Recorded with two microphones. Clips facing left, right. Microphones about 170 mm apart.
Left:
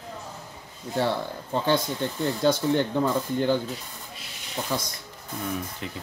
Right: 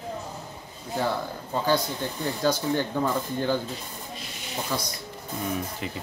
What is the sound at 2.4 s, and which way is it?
A man's voice, 25° left (ahead or behind).